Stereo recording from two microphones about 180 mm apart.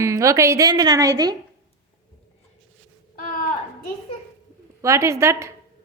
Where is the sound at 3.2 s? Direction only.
45° left (ahead or behind).